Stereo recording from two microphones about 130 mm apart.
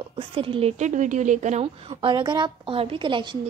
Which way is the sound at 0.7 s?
65° right (ahead or behind).